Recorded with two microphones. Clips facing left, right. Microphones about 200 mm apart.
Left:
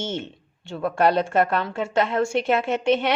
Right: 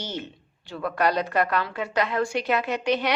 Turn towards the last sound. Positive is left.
turn(degrees=25)  # may be behind; listen again after turning